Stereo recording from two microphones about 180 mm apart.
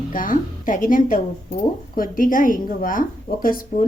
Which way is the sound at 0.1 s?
50° left (ahead or behind).